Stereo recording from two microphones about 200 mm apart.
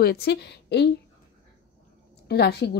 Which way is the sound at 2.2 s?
55° left (ahead or behind).